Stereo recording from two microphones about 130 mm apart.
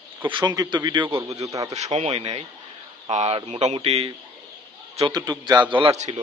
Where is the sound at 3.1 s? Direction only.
65° right (ahead or behind).